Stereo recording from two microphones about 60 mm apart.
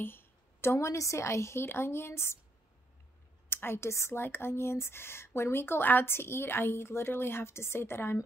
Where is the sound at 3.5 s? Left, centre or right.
Left.